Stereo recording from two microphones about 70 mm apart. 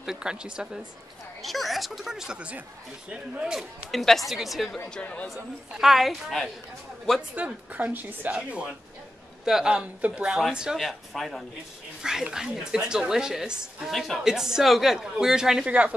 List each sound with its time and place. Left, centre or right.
0.0 s a woman's voice: centre
1.4 s a woman's voice: centre
3.9 s speech: centre
4.8 s speech: centre
5.3 s speech: centre
7.2 s a woman's voice: centre
9.4 s a woman's voice: centre